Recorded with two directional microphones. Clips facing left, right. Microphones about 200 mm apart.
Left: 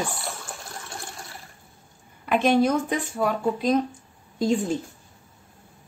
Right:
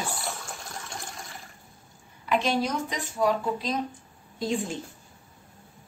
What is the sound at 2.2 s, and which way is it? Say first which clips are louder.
Speech: left 6 dB; 55° left (ahead or behind).